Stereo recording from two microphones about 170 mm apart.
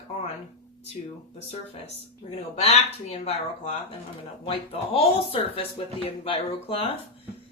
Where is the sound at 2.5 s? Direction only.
40° left (ahead or behind).